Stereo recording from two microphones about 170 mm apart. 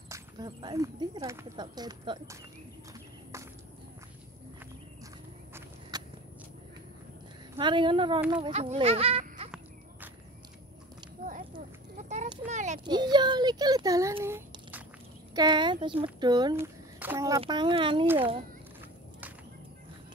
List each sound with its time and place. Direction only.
0.1 s speech: 25° right (ahead or behind)
2.9 s walk: 15° right (ahead or behind)
5.5 s walk: 25° right (ahead or behind)
7.5 s speech: 30° right (ahead or behind)
8.5 s speech: 40° right (ahead or behind)
11.2 s a sound: 50° right (ahead or behind)
12.8 s speech: 25° right (ahead or behind)
15.3 s speech: 25° right (ahead or behind)
17.0 s a child's voice: 15° right (ahead or behind)
17.4 s speech: 25° right (ahead or behind)